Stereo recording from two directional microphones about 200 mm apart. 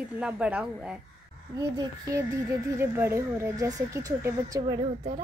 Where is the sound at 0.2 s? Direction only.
5° right (ahead or behind).